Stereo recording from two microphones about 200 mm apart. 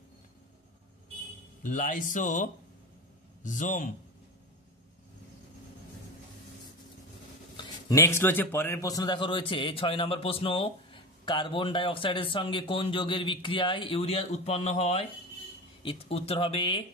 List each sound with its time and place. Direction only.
1.6 s speech: 40° left (ahead or behind)
7.5 s a man's voice: 15° left (ahead or behind)